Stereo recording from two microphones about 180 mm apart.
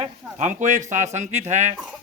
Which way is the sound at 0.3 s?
45° right (ahead or behind).